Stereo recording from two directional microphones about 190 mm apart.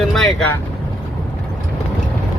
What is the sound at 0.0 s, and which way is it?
Vehicle, centre (ahead or behind).